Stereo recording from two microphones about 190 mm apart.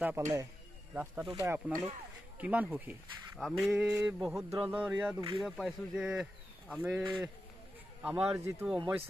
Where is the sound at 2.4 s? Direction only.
5° right (ahead or behind).